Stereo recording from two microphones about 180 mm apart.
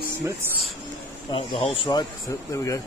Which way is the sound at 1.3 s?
30° left (ahead or behind).